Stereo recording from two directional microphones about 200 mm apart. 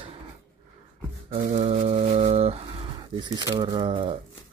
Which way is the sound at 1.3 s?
30° right (ahead or behind).